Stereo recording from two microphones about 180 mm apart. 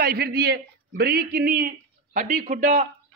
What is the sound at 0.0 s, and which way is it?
A man's voice, 60° right (ahead or behind).